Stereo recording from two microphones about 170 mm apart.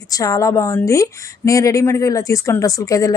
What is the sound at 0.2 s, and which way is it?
Speech, 20° left (ahead or behind).